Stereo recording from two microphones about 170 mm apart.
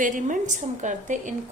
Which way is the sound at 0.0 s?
50° right (ahead or behind).